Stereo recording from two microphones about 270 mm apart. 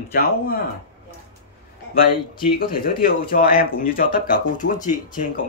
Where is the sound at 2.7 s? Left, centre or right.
Left.